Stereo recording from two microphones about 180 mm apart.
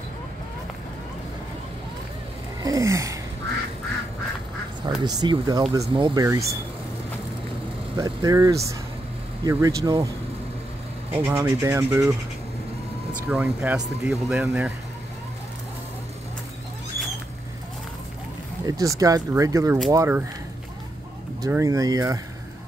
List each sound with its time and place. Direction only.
2.6 s speech: 20° right (ahead or behind)
4.8 s speech: 20° right (ahead or behind)
8.0 s speech: 20° right (ahead or behind)
11.1 s speech: 15° right (ahead or behind)
13.3 s speech: 5° right (ahead or behind)
18.7 s speech: 20° right (ahead or behind)
21.4 s speech: 15° right (ahead or behind)